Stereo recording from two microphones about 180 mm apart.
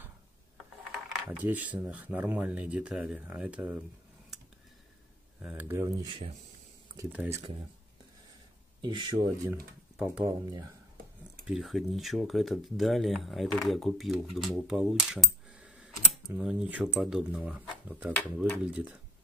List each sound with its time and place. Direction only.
0.9 s speech: 10° right (ahead or behind)
5.4 s speech: 5° right (ahead or behind)
6.0 s speech: 30° right (ahead or behind)
7.0 s speech: 10° right (ahead or behind)
8.8 s speech: 25° right (ahead or behind)
11.4 s speech: centre (ahead or behind)